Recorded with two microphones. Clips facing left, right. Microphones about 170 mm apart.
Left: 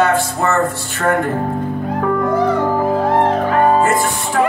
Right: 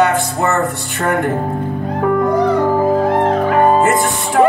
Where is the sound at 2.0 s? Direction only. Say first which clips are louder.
Right 3 dB; 15° right (ahead or behind).